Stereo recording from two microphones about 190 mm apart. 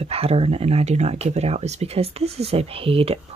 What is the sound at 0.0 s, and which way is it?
Speech, 30° right (ahead or behind).